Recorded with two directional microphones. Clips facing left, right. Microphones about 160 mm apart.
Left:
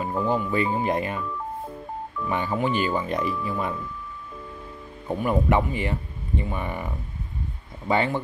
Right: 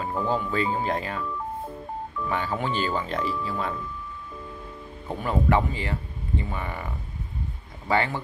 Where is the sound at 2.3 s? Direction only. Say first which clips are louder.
Left 3 dB; 15° left (ahead or behind).